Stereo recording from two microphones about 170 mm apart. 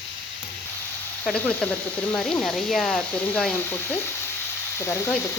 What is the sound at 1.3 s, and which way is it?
Speech, 5° left (ahead or behind).